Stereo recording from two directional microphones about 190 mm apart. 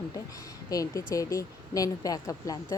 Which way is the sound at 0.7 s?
20° left (ahead or behind).